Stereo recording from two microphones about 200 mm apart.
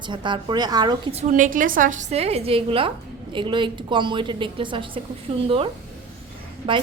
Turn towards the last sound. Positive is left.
turn(degrees=-25)  # may be behind; listen again after turning